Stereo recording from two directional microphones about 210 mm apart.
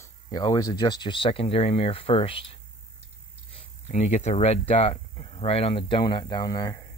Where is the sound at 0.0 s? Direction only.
15° left (ahead or behind).